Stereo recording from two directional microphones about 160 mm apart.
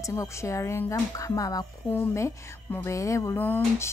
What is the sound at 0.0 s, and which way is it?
A woman's voice, 20° left (ahead or behind).